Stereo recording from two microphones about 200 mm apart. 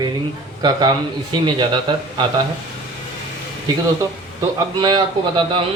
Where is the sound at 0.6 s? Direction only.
20° right (ahead or behind).